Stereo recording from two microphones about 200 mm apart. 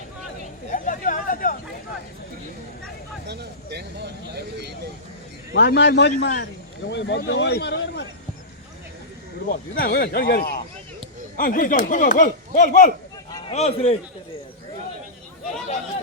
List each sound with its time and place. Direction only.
0.7 s hubbub: 40° left (ahead or behind)
3.2 s a sound: 55° right (ahead or behind)
5.5 s a man's voice: 60° left (ahead or behind)
9.5 s speech: 45° left (ahead or behind); by 13.9 s 30° left (ahead or behind)